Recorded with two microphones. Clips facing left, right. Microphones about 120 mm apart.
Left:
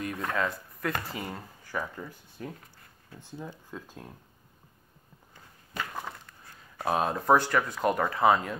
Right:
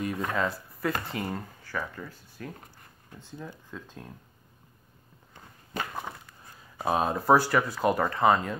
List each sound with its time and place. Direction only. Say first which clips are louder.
0.0 s speech: right 2 dB; 5° right (ahead or behind)
1.6 s speech: even; 15° left (ahead or behind)
5.9 s speech: right 1 dB; 10° right (ahead or behind)